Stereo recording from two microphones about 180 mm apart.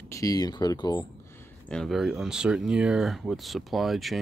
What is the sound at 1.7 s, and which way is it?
Speech, centre (ahead or behind).